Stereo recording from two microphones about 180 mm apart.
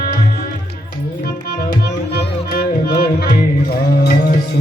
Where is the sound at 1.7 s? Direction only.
60° left (ahead or behind).